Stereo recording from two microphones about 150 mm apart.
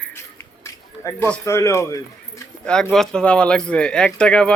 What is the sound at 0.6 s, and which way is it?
Speech, 15° left (ahead or behind).